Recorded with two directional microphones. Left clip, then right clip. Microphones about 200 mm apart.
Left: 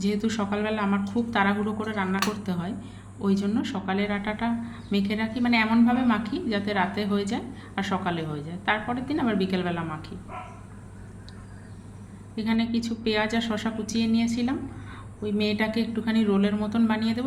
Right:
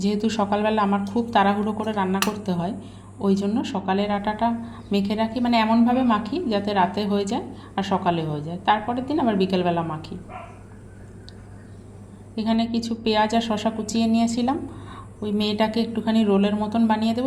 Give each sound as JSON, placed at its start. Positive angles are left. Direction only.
{"t": 0.0, "sound": "speech", "side_deg": -15}
{"t": 12.4, "sound": "a woman's voice", "side_deg": -20}